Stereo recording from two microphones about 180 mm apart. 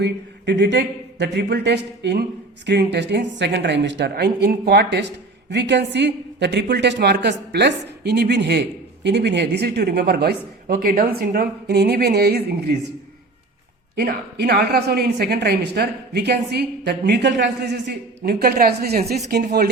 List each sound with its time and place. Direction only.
0.0 s a woman's voice: 70° right (ahead or behind)
13.9 s a woman's voice: 60° right (ahead or behind)
18.2 s a woman's voice: 55° right (ahead or behind)